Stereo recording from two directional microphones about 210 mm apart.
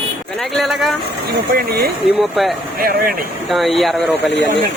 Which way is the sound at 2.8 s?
45° right (ahead or behind).